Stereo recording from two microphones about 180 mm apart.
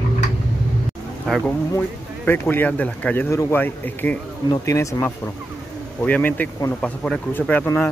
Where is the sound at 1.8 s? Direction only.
10° left (ahead or behind).